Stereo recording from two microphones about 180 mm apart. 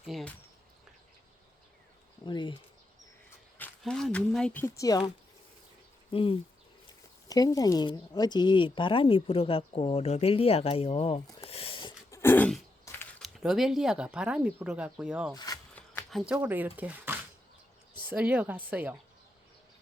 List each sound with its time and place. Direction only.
0.0 s speech: centre (ahead or behind)
2.2 s speech: 25° left (ahead or behind)
3.6 s speech: 5° left (ahead or behind); by 11.2 s 35° left (ahead or behind)
11.4 s a sound: 30° left (ahead or behind)
12.2 s throat clearing: 10° left (ahead or behind)
13.2 s speech: centre (ahead or behind)
15.7 s shuffling cards: 5° left (ahead or behind)
16.2 s speech: 5° right (ahead or behind)